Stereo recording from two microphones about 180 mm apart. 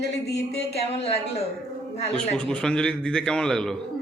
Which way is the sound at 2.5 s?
5° left (ahead or behind).